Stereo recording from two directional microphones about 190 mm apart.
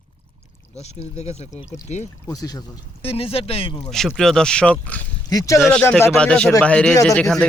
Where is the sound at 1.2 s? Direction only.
35° left (ahead or behind).